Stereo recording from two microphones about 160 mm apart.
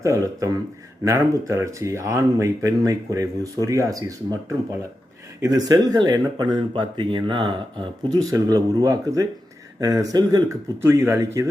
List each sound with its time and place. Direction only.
0.0 s speech: 20° right (ahead or behind)